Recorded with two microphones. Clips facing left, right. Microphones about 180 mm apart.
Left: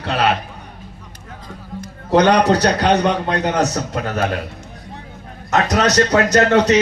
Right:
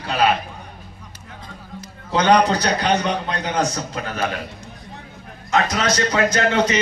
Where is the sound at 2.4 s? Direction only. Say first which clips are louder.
Left 5 dB; 65° left (ahead or behind).